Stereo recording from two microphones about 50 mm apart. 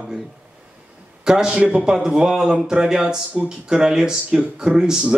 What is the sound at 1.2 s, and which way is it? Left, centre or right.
A man's voice, centre.